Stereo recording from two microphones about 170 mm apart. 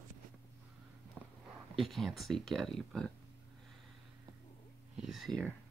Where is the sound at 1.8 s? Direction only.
Centre (ahead or behind).